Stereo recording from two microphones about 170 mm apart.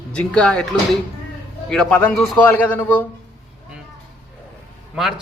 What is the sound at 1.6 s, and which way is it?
A man's voice, 5° left (ahead or behind).